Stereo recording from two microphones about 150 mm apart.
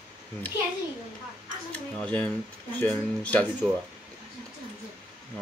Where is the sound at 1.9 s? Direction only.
10° left (ahead or behind).